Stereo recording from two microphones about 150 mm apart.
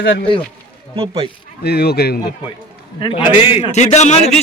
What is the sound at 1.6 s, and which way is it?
Speech, 90° left.